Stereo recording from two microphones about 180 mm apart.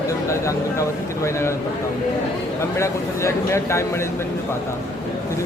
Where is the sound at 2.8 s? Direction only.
15° left (ahead or behind).